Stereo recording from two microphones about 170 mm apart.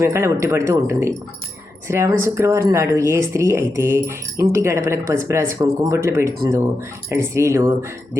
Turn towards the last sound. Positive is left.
turn(degrees=-15)  # may be behind; listen again after turning